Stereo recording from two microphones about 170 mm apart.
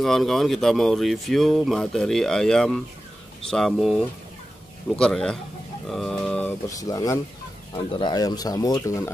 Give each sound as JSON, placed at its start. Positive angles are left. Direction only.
{"t": 0.0, "sound": "speech", "side_deg": 0}
{"t": 5.9, "sound": "a sound", "side_deg": 0}
{"t": 6.8, "sound": "speech", "side_deg": 20}